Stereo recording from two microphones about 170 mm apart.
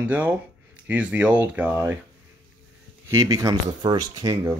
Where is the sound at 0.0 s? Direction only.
10° right (ahead or behind).